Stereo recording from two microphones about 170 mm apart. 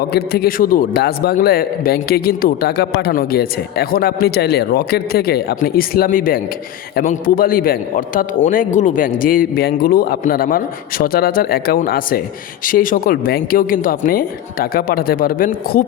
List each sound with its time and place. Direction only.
0.1 s a man's voice: 65° left (ahead or behind)